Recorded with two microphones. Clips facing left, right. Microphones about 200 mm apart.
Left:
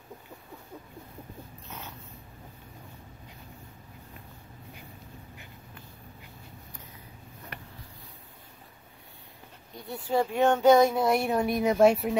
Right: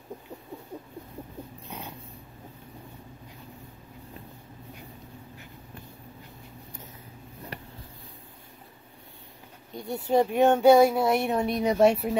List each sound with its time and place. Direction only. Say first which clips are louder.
1.7 s dog: right 2 dB; 15° right (ahead or behind)
7.5 s a sound: right 4 dB; 35° right (ahead or behind)
10.0 s speech: right 3 dB; 20° right (ahead or behind); by 12.2 s centre (ahead or behind)